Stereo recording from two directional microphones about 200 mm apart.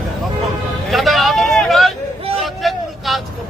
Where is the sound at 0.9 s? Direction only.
Centre (ahead or behind).